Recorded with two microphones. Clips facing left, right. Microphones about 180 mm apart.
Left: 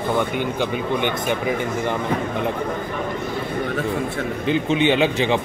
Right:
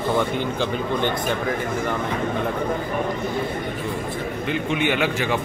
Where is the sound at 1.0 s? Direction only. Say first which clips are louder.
Left 1 dB; 15° left (ahead or behind).